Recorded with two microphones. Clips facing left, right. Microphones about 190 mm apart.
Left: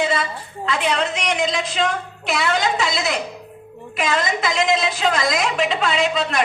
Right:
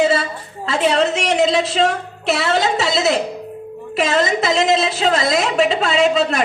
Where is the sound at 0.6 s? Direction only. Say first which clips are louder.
Right 5 dB; 30° right (ahead or behind).